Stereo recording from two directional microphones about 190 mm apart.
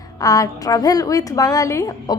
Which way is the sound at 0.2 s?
20° left (ahead or behind).